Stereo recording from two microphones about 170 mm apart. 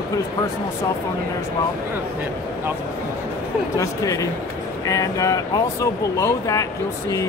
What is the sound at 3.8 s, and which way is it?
Speech, 20° left (ahead or behind).